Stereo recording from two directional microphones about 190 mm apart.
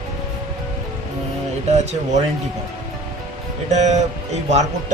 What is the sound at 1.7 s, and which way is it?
Speech, 35° right (ahead or behind).